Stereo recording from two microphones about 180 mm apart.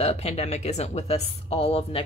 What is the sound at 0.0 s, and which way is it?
A woman's voice, 35° left (ahead or behind).